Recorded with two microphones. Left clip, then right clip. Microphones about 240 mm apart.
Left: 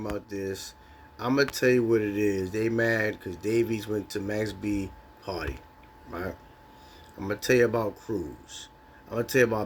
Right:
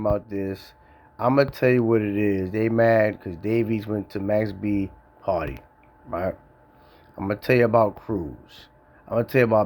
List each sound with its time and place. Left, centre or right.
0.0 s speech: right